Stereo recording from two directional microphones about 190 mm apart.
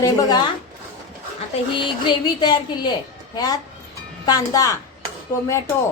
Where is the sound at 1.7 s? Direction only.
25° left (ahead or behind).